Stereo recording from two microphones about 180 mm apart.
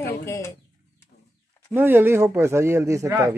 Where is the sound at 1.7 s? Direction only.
10° right (ahead or behind).